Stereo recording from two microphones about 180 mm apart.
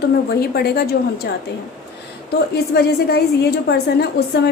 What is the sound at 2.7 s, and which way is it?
A woman's voice, 65° left (ahead or behind).